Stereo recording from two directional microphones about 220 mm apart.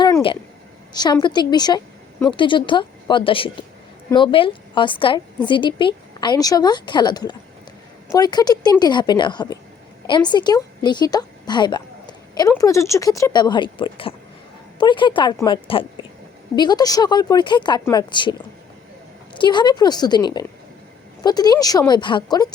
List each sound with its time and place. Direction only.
0.0 s a sound: 20° left (ahead or behind)
0.9 s a woman's voice: 20° left (ahead or behind)
19.4 s a woman's voice: 20° left (ahead or behind)